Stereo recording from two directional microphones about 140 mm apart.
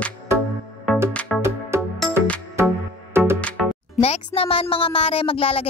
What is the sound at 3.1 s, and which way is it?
Music, 15° right (ahead or behind).